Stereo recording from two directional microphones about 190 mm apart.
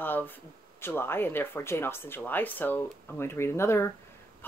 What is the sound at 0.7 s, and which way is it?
A woman's voice, 10° left (ahead or behind).